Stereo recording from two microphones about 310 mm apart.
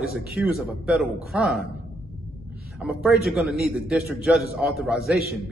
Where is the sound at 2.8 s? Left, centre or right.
Centre.